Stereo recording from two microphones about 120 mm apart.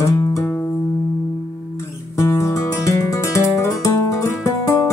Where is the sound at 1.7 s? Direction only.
25° left (ahead or behind).